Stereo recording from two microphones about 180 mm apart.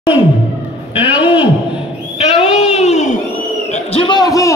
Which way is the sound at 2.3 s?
35° left (ahead or behind).